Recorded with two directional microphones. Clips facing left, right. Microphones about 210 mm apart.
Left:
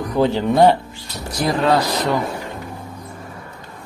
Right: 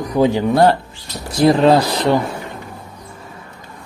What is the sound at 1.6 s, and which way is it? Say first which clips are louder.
Speech: right 5 dB; 30° right (ahead or behind).